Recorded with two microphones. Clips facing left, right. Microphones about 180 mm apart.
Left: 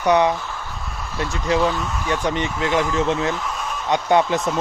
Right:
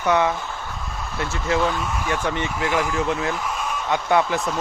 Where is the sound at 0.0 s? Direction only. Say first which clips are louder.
Left 3 dB; 20° left (ahead or behind).